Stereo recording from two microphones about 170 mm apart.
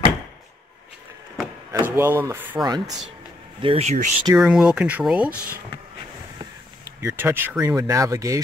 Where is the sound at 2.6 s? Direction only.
25° right (ahead or behind).